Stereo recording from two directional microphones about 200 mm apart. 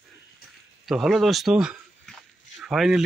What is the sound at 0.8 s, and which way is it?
Speech, centre (ahead or behind).